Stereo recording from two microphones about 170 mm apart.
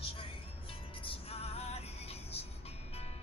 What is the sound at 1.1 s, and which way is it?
Music, 35° left (ahead or behind).